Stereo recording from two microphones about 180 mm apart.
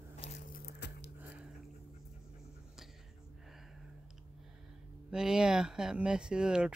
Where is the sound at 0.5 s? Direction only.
65° left (ahead or behind).